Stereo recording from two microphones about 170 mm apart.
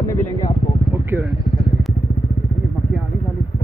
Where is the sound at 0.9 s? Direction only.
15° right (ahead or behind).